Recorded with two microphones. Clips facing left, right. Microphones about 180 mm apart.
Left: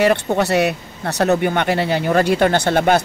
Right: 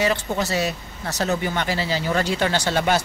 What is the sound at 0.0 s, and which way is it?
Speech, 60° left (ahead or behind).